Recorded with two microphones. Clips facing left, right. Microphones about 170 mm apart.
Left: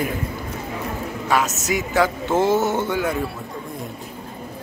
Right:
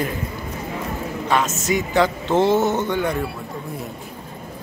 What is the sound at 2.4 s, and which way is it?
Speech, 20° right (ahead or behind).